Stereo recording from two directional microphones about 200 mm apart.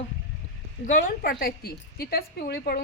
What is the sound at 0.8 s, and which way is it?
A woman's voice, 40° left (ahead or behind).